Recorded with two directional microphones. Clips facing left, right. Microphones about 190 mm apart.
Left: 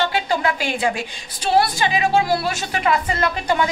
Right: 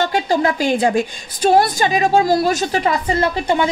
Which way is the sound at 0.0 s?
40° right (ahead or behind).